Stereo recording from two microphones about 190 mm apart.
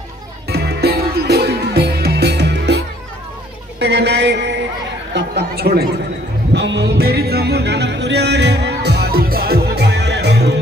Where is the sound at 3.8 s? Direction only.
60° right (ahead or behind).